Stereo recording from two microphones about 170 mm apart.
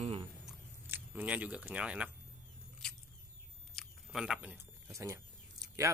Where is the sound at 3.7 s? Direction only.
Centre (ahead or behind).